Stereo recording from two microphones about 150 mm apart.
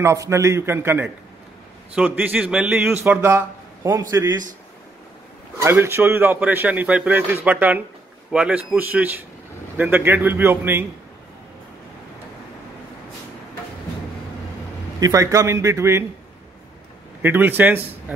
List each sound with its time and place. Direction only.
0.0 s a man's voice: 20° right (ahead or behind)
5.6 s a man's voice: 15° right (ahead or behind)
15.0 s a man's voice: 20° right (ahead or behind)
17.2 s a man's voice: 15° right (ahead or behind)